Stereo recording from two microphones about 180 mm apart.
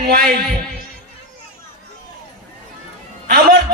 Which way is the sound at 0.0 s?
60° right (ahead or behind).